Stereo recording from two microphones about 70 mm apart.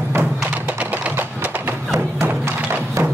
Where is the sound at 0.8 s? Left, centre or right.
Right.